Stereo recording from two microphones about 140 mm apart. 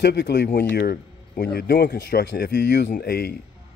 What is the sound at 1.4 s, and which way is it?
Speech, 90° left.